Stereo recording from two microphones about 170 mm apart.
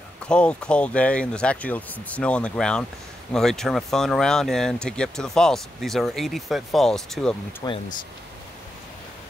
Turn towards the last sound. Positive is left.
turn(degrees=20)  # may be behind; listen again after turning